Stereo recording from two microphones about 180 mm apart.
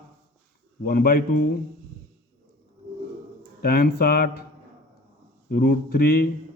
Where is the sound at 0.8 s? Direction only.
55° left (ahead or behind).